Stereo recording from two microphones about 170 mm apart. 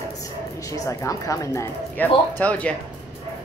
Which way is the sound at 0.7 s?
20° left (ahead or behind).